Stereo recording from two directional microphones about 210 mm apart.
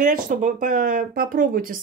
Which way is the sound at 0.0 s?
40° right (ahead or behind).